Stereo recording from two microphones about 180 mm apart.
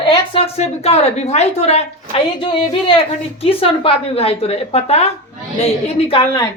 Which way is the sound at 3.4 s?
30° left (ahead or behind).